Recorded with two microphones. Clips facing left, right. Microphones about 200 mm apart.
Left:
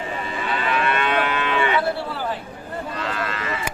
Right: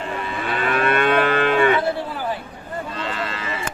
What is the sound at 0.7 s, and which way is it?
Livestock, 50° right (ahead or behind).